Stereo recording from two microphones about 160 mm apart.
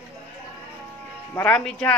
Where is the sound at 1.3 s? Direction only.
10° left (ahead or behind).